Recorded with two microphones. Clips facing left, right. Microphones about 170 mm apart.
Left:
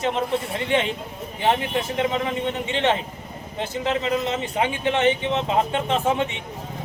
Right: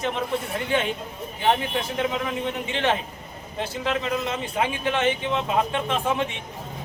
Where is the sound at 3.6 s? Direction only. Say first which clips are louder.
Left 2 dB; 20° left (ahead or behind).